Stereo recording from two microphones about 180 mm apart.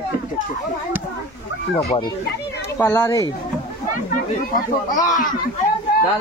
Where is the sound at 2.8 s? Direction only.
15° left (ahead or behind).